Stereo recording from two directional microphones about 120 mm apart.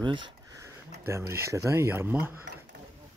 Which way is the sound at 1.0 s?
20° right (ahead or behind).